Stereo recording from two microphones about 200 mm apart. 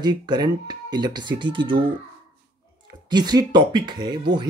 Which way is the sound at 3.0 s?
20° right (ahead or behind).